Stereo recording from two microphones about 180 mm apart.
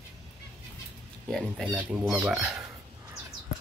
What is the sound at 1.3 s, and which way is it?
Speech, centre (ahead or behind).